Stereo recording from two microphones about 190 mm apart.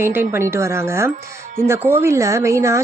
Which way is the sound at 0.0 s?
10° right (ahead or behind).